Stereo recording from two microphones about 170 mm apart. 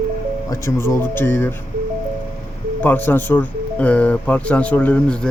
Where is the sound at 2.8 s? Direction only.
10° left (ahead or behind).